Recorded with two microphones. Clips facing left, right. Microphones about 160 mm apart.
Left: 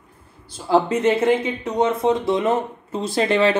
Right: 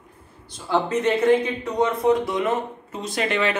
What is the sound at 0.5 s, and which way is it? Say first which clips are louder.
Speech: left 4 dB; 30° left (ahead or behind).